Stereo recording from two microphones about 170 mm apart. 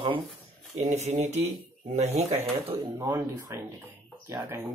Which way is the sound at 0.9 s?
40° right (ahead or behind).